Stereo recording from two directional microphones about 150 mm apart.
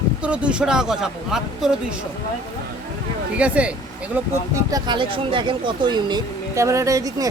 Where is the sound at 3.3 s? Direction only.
10° right (ahead or behind).